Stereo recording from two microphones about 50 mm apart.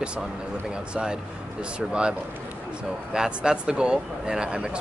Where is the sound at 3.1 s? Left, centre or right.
Centre.